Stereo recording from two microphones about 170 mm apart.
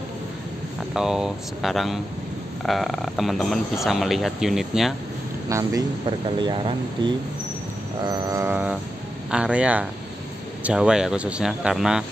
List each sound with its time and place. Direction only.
0.9 s speech: 5° right (ahead or behind)
5.5 s speech: 20° right (ahead or behind)
6.0 s speech: 30° right (ahead or behind)
8.0 s a sound: 20° right (ahead or behind)
10.6 s speech: 5° right (ahead or behind)